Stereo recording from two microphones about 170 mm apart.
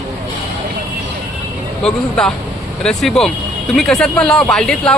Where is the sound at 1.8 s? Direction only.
5° left (ahead or behind).